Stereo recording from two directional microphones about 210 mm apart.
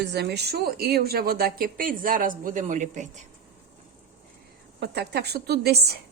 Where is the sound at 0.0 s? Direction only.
55° right (ahead or behind); by 3.1 s 35° right (ahead or behind).